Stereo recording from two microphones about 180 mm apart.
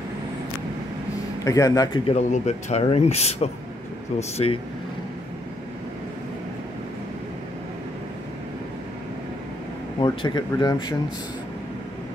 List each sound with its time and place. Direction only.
1.4 s speech: 20° left (ahead or behind)
2.0 s speech: 40° left (ahead or behind)
9.9 s speech: 25° left (ahead or behind)